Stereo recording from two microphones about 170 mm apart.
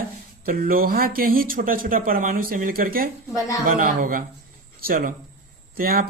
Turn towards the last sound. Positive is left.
turn(degrees=-60)  # may be behind; listen again after turning